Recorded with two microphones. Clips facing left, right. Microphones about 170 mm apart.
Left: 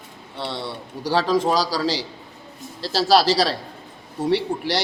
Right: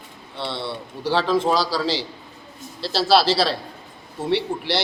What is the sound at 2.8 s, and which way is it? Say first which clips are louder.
Speech: even; 10° left (ahead or behind).